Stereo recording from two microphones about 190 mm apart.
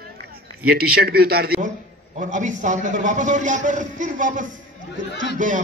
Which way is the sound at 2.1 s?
40° right (ahead or behind).